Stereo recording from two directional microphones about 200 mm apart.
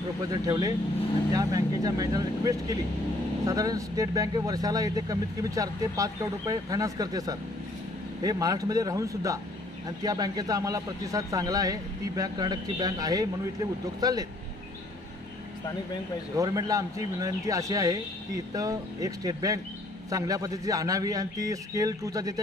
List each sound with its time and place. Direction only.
0.3 s a man's voice: 20° right (ahead or behind)
16.3 s speech: 20° right (ahead or behind)